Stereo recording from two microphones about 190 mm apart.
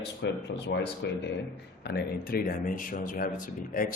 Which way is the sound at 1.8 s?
55° left (ahead or behind).